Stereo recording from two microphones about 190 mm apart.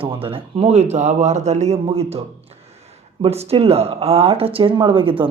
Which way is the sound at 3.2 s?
30° right (ahead or behind).